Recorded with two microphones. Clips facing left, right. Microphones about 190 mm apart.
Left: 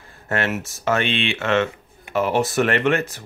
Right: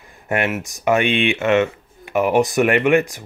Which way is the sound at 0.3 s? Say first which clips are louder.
Right 2 dB; 15° right (ahead or behind).